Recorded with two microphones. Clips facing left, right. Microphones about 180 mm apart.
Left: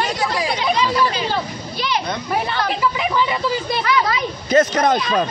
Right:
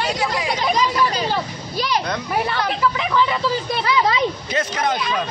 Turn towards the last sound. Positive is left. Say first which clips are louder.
# left 7 dB
turn(degrees=45)  # may be behind; listen again after turning